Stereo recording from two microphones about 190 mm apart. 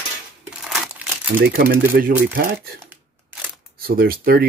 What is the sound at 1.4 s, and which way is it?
Speech, 50° right (ahead or behind).